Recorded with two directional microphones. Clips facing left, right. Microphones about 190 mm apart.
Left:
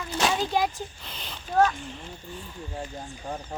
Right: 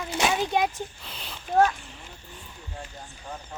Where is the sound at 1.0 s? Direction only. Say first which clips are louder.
Even; 5° right (ahead or behind).